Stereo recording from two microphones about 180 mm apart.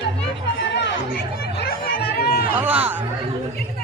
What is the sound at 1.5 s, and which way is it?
Chatter, 60° left (ahead or behind).